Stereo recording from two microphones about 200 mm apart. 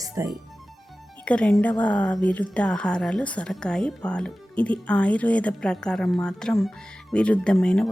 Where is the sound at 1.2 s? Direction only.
5° left (ahead or behind).